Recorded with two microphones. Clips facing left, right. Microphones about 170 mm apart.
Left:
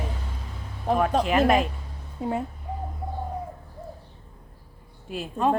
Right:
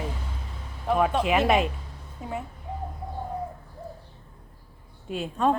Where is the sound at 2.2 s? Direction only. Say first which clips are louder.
Left 7 dB; 30° left (ahead or behind).